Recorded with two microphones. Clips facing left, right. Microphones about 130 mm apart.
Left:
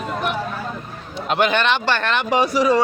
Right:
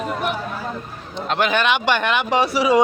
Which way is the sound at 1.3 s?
Centre (ahead or behind).